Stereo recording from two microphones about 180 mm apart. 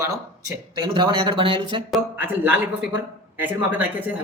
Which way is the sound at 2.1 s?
10° right (ahead or behind).